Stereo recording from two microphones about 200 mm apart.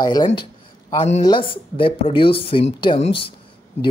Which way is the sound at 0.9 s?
35° left (ahead or behind).